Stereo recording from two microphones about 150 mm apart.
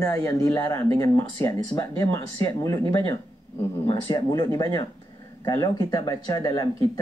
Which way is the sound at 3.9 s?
30° left (ahead or behind).